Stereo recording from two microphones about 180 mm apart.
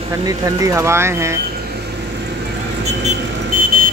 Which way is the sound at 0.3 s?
15° right (ahead or behind).